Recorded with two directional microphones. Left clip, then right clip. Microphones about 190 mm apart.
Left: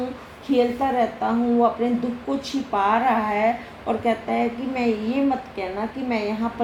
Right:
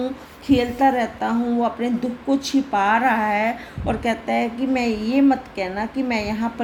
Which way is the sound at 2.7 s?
45° right (ahead or behind).